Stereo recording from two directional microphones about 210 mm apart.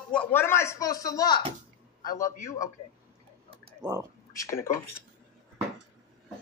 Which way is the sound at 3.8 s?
20° right (ahead or behind).